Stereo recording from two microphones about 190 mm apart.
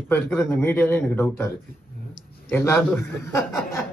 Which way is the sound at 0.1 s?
10° left (ahead or behind).